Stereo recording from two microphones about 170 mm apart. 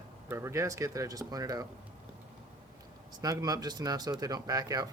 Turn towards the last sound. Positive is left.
turn(degrees=-20)  # may be behind; listen again after turning